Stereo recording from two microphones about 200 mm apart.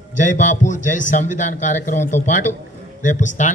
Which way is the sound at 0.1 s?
40° left (ahead or behind).